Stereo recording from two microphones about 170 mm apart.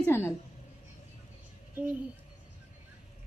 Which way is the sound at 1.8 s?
10° right (ahead or behind).